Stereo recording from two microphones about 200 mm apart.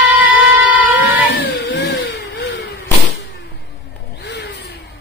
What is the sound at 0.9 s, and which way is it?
Cat, 55° left (ahead or behind).